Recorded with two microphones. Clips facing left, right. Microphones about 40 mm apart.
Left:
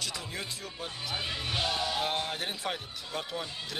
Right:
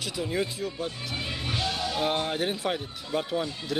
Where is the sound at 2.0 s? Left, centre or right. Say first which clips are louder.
Right 5 dB; centre.